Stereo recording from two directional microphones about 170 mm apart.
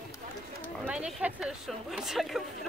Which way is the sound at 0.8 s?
5° right (ahead or behind).